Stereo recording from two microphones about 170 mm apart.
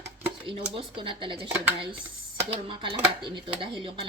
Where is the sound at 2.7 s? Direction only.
30° right (ahead or behind).